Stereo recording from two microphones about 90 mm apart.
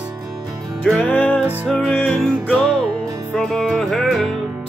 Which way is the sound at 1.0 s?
20° left (ahead or behind).